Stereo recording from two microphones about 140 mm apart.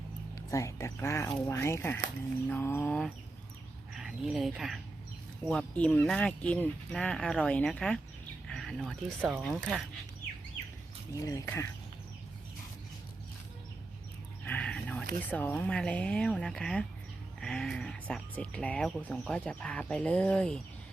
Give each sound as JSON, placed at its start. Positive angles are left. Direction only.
{"t": 0.5, "sound": "speech", "side_deg": 20}
{"t": 3.9, "sound": "speech", "side_deg": -5}
{"t": 11.2, "sound": "speech", "side_deg": 25}
{"t": 14.4, "sound": "a sound", "side_deg": 10}
{"t": 15.2, "sound": "speech", "side_deg": 10}